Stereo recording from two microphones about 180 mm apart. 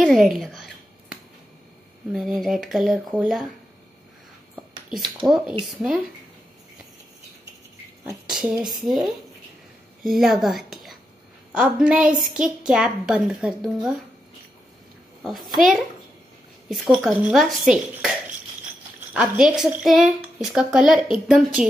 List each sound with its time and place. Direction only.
0.0 s a sound: centre (ahead or behind)
2.1 s a woman's voice: centre (ahead or behind)
5.0 s speech: 25° right (ahead or behind)
5.3 s a woman's voice: 5° right (ahead or behind)
8.5 s a woman's voice: centre (ahead or behind)
15.2 s a woman's voice: centre (ahead or behind)
19.1 s a woman's voice: 5° right (ahead or behind)